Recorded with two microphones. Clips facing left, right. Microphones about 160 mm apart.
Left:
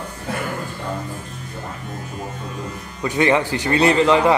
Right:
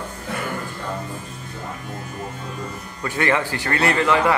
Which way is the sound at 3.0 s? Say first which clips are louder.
Left 4 dB; 20° left (ahead or behind).